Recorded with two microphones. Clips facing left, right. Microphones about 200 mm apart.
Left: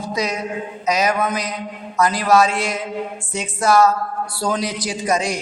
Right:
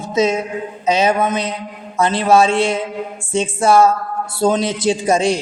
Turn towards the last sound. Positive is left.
turn(degrees=-30)  # may be behind; listen again after turning